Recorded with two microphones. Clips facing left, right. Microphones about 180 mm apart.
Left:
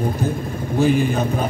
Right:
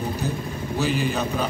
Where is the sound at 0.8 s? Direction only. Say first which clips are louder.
Left 7 dB; 50° left (ahead or behind).